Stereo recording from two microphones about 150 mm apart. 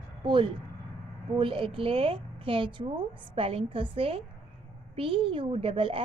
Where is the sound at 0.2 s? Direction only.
35° right (ahead or behind).